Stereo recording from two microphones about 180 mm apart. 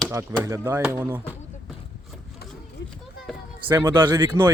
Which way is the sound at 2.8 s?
75° left (ahead or behind).